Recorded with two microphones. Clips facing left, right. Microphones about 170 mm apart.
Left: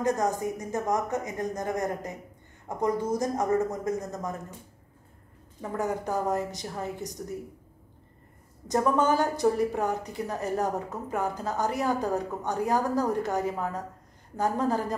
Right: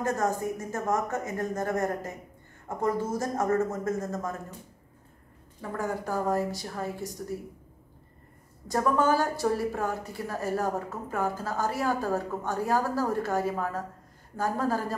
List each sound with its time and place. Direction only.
0.0 s speech: 15° left (ahead or behind)
5.6 s a woman's voice: 20° left (ahead or behind)
8.6 s a woman's voice: 20° left (ahead or behind)